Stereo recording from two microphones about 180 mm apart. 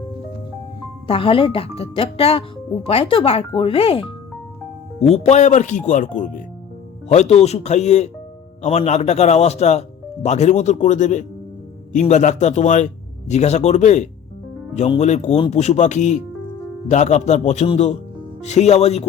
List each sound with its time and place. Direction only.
1.0 s speech: 30° left (ahead or behind)